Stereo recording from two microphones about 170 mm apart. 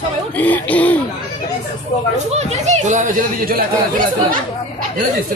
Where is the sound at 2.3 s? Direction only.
40° right (ahead or behind).